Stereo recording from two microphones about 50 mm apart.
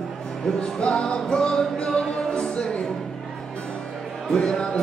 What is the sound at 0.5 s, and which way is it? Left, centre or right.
Music, centre.